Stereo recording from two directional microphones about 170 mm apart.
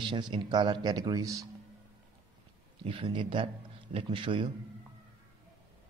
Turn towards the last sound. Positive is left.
turn(degrees=-30)  # may be behind; listen again after turning